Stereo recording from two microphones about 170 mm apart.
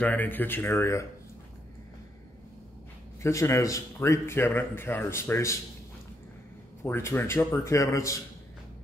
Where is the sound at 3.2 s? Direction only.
15° left (ahead or behind).